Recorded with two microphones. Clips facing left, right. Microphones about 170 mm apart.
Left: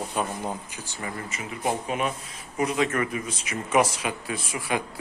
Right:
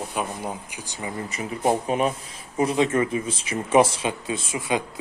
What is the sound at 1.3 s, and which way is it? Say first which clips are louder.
Speech: right 6 dB; 35° right (ahead or behind).